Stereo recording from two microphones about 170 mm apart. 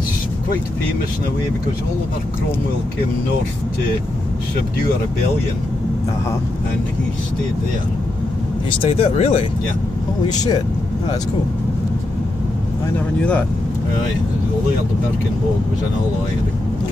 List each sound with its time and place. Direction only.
8.6 s speech: 35° left (ahead or behind)
10.3 s speech: 25° left (ahead or behind)